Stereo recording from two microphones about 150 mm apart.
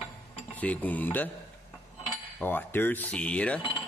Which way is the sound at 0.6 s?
10° left (ahead or behind).